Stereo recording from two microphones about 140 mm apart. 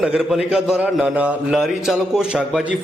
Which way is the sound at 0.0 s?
5° right (ahead or behind).